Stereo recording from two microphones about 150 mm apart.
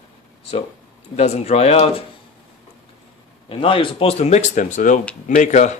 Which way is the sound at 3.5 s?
35° left (ahead or behind).